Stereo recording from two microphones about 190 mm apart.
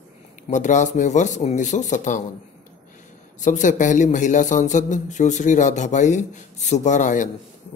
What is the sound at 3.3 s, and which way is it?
Speech, 40° left (ahead or behind).